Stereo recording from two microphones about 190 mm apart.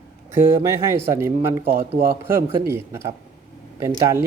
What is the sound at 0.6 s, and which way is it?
Speech, 15° right (ahead or behind).